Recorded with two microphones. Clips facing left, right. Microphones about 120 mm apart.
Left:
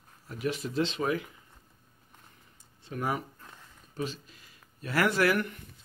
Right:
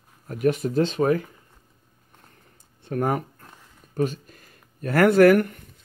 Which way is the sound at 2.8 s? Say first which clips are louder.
Right 8 dB; 55° right (ahead or behind).